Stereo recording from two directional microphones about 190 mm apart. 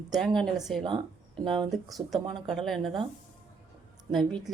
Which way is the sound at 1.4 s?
25° right (ahead or behind).